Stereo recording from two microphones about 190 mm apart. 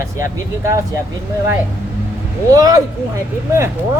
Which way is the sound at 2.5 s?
20° right (ahead or behind).